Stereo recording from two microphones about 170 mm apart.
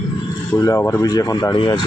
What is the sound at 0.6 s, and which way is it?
Speech, 15° left (ahead or behind).